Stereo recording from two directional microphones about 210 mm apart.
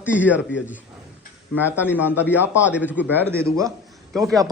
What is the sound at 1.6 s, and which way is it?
Speech, 5° right (ahead or behind).